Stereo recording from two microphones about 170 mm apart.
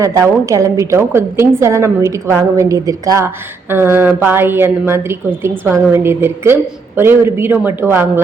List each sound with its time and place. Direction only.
0.0 s a woman's voice: 20° right (ahead or behind)